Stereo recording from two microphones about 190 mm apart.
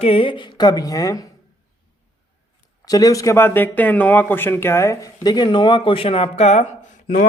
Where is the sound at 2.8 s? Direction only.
20° left (ahead or behind); by 6.7 s 35° left (ahead or behind).